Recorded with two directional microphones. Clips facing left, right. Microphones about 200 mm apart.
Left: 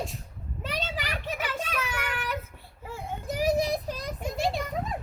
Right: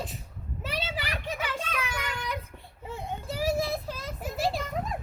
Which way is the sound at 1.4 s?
10° left (ahead or behind).